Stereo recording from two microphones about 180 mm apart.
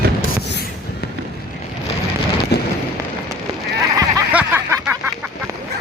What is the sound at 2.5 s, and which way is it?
Fireworks, 65° left (ahead or behind).